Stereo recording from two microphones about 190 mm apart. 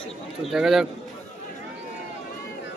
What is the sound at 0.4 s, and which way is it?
Speech, centre (ahead or behind).